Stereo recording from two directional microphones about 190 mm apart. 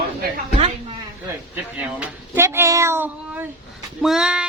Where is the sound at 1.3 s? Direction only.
10° right (ahead or behind).